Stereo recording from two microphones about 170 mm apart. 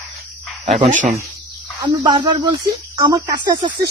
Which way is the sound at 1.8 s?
25° right (ahead or behind).